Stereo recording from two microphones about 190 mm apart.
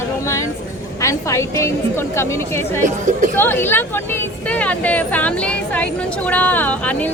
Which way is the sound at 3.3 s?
10° left (ahead or behind).